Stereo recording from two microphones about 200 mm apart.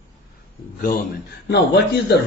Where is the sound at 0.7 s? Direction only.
45° left (ahead or behind).